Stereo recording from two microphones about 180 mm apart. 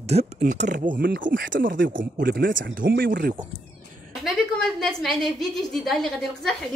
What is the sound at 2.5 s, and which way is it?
Speech, 90° right.